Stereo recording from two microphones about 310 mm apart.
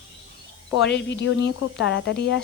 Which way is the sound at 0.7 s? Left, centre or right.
Left.